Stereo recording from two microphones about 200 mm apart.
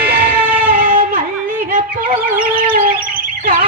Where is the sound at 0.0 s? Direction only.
45° right (ahead or behind).